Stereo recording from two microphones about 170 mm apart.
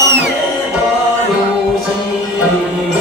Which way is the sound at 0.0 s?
90° right.